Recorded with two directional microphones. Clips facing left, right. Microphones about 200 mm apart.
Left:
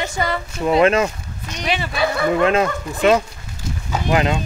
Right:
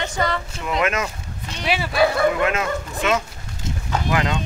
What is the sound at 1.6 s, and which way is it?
Speech, 5° right (ahead or behind).